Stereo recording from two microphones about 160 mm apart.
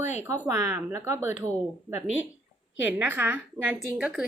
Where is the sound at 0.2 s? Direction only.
10° right (ahead or behind).